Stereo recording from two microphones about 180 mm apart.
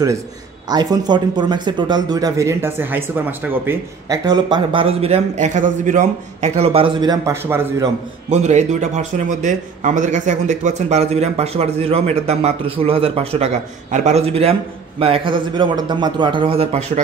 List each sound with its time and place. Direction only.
0.7 s speech: 20° right (ahead or behind)
4.3 s a man's voice: 25° right (ahead or behind)
8.3 s a man's voice: 40° right (ahead or behind)